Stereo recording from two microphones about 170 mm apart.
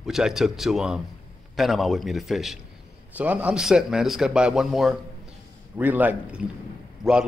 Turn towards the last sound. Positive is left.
turn(degrees=-5)  # may be behind; listen again after turning